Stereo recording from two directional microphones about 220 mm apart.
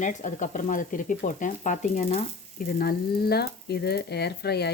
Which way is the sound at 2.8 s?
45° left (ahead or behind).